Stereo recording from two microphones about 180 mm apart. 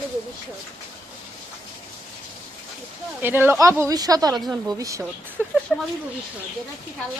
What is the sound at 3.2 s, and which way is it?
Speech, 10° right (ahead or behind).